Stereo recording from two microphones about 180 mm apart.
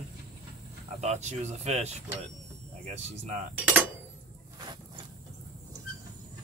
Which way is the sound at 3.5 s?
10° right (ahead or behind).